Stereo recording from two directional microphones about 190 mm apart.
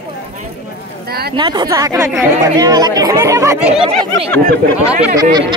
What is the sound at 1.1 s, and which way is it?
Speech, 55° right (ahead or behind).